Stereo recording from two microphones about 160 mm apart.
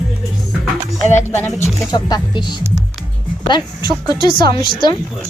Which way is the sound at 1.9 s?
25° left (ahead or behind).